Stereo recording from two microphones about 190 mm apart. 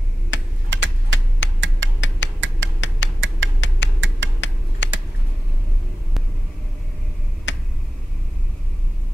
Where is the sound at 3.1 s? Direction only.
75° right (ahead or behind).